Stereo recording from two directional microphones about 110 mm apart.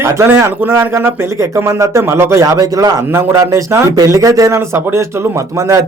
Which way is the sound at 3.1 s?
20° right (ahead or behind).